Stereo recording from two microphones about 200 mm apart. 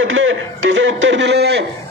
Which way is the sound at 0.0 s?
75° right (ahead or behind).